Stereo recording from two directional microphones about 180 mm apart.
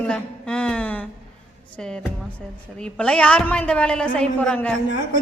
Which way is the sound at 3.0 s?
5° left (ahead or behind).